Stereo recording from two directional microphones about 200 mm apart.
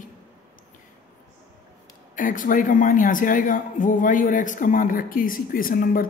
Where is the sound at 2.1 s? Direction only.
40° left (ahead or behind).